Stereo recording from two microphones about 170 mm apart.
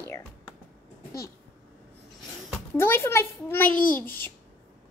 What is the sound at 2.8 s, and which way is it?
A woman's voice, 15° left (ahead or behind).